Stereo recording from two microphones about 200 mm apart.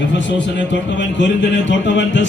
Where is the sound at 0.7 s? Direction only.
65° left (ahead or behind).